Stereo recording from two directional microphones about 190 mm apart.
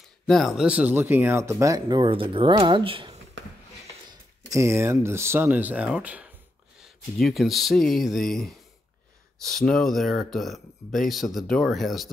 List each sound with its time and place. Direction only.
0.3 s speech: centre (ahead or behind); by 3.2 s 30° right (ahead or behind)
4.1 s speech: 15° right (ahead or behind); by 12.1 s centre (ahead or behind)